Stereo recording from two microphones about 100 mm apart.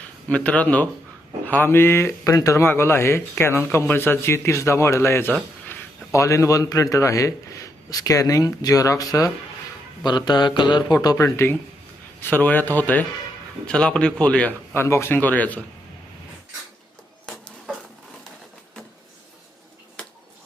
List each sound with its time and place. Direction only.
0.3 s a man's voice: 15° left (ahead or behind); by 9.3 s 35° left (ahead or behind)
10.0 s mantra: 45° left (ahead or behind)
11.2 s speech: 25° left (ahead or behind)
14.7 s speech: 25° left (ahead or behind)